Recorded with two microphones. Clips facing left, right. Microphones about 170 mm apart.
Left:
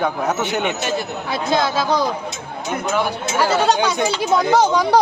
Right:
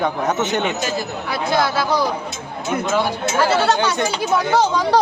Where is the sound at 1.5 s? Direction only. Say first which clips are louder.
Left 1 dB; 20° left (ahead or behind).